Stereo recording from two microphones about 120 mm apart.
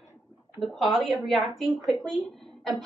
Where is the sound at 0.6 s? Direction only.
Centre (ahead or behind).